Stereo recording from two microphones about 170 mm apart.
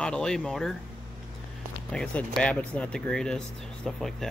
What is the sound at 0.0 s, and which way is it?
Speech, 5° left (ahead or behind).